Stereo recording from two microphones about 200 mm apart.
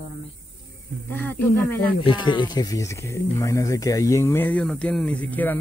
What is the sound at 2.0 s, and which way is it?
Speech, 25° left (ahead or behind).